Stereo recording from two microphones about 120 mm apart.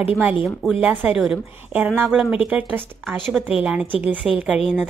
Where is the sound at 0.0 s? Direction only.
10° right (ahead or behind).